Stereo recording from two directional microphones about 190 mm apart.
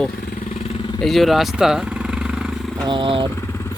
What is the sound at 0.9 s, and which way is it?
Vehicle, centre (ahead or behind).